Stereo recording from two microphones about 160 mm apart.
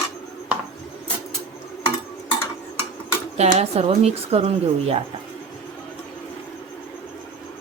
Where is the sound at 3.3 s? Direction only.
45° right (ahead or behind).